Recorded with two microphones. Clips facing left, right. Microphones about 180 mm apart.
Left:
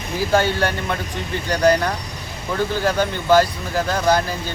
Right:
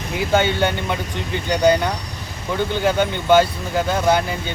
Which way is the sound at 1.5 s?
25° right (ahead or behind).